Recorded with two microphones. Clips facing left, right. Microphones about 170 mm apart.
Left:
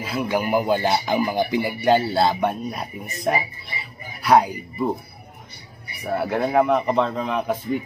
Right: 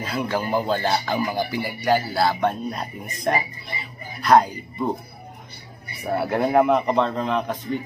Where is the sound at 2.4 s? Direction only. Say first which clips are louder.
Even; 5° left (ahead or behind).